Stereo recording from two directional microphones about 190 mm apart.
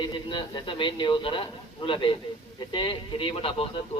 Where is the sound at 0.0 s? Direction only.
25° left (ahead or behind).